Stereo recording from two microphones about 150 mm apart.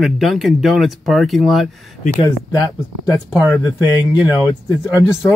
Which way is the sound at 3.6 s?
25° left (ahead or behind).